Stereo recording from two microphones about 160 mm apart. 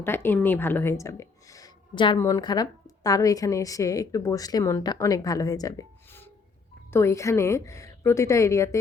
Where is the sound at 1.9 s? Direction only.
30° left (ahead or behind).